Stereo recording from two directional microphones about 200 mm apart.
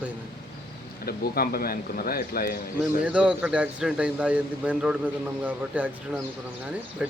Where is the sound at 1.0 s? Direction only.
50° left (ahead or behind).